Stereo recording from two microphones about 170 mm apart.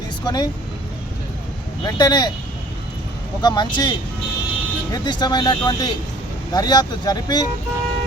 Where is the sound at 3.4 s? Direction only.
25° left (ahead or behind).